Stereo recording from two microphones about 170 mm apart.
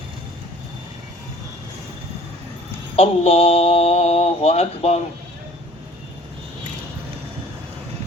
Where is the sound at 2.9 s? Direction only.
35° left (ahead or behind).